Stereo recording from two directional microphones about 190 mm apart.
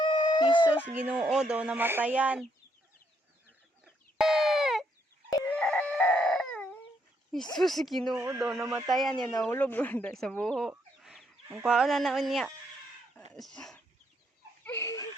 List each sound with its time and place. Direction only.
0.0 s a sound: 25° left (ahead or behind)
1.0 s speech: 5° right (ahead or behind)
4.2 s a sound: centre (ahead or behind)
5.3 s chicken: 15° left (ahead or behind)
5.5 s a sound: 5° left (ahead or behind)
7.5 s music: centre (ahead or behind)
8.1 s speech: 15° right (ahead or behind)
8.9 s music: centre (ahead or behind)
9.4 s speech: 10° left (ahead or behind)
11.6 s music: centre (ahead or behind)
13.3 s speech: 5° left (ahead or behind)
14.6 s laughter: 10° left (ahead or behind)